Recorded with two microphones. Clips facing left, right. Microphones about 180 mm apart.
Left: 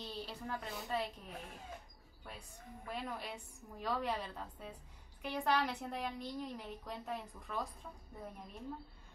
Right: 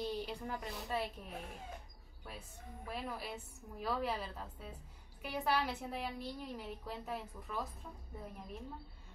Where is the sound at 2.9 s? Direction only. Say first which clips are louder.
Even; 5° right (ahead or behind).